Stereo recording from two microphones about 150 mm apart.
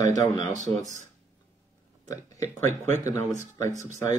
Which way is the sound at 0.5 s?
55° right (ahead or behind).